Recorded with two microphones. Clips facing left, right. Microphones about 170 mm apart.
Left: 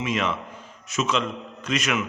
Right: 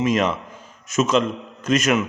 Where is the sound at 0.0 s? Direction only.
40° right (ahead or behind).